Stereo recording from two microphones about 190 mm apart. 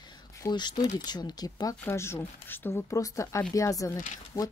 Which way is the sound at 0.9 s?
20° left (ahead or behind).